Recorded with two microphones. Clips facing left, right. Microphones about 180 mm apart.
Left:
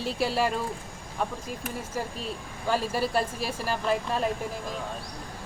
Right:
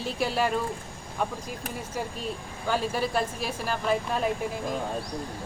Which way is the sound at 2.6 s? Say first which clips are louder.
Even; 5° left (ahead or behind).